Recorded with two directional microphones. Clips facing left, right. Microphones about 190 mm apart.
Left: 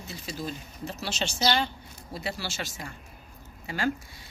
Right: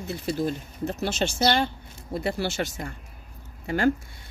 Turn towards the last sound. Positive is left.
turn(degrees=-55)  # may be behind; listen again after turning